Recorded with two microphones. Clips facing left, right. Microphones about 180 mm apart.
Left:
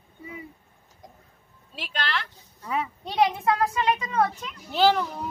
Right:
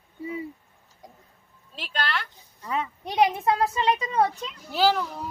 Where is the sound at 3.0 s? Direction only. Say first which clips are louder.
Right 1 dB; 15° right (ahead or behind).